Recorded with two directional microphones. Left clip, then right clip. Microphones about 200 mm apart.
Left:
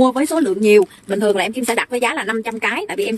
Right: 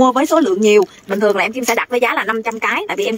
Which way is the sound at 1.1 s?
15° left (ahead or behind).